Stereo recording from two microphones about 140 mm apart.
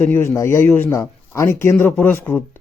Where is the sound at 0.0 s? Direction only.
15° left (ahead or behind).